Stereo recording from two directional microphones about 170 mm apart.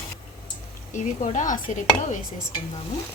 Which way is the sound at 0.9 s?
45° left (ahead or behind).